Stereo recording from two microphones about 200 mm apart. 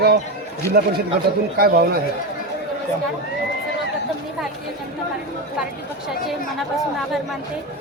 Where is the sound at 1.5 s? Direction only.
50° right (ahead or behind).